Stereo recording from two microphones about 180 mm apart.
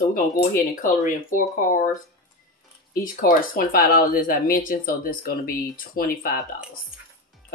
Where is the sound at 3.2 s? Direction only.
50° left (ahead or behind).